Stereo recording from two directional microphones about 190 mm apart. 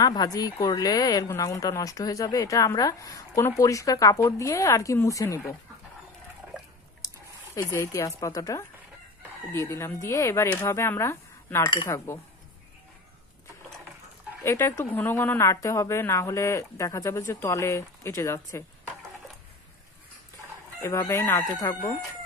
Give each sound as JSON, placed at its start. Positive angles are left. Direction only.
{"t": 0.0, "sound": "speech", "side_deg": 20}
{"t": 7.0, "sound": "squish", "side_deg": 20}
{"t": 7.5, "sound": "speech", "side_deg": 15}
{"t": 14.4, "sound": "speech", "side_deg": 15}
{"t": 20.8, "sound": "speech", "side_deg": 15}